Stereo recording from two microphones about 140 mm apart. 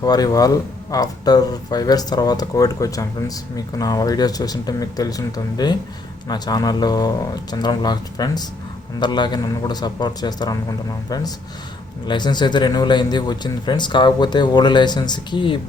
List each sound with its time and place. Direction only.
0.0 s speech: 25° left (ahead or behind)